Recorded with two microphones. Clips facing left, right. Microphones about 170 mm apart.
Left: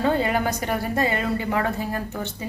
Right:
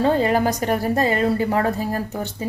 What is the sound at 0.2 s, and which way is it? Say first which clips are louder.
A woman's voice: right 4 dB; 35° right (ahead or behind).